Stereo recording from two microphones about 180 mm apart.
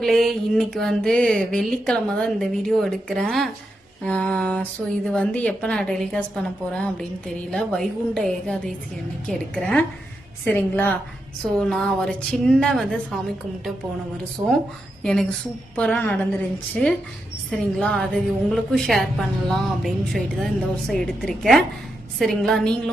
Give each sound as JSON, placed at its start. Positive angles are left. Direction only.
{"t": 0.0, "sound": "speech", "side_deg": 0}
{"t": 4.0, "sound": "a sound", "side_deg": 5}
{"t": 5.0, "sound": "speech", "side_deg": 5}
{"t": 10.4, "sound": "a sound", "side_deg": 10}
{"t": 11.5, "sound": "speech", "side_deg": 5}
{"t": 14.4, "sound": "speech", "side_deg": -25}
{"t": 15.0, "sound": "speech", "side_deg": 5}
{"t": 15.7, "sound": "a sound", "side_deg": 5}
{"t": 16.8, "sound": "speech", "side_deg": 5}